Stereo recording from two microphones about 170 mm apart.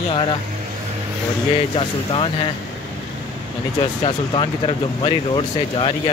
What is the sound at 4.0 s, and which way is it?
Speech, 30° left (ahead or behind).